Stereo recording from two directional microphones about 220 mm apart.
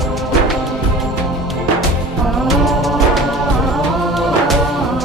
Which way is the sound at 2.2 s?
Centre (ahead or behind).